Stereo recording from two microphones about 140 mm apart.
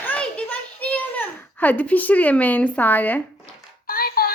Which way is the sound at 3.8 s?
90° left.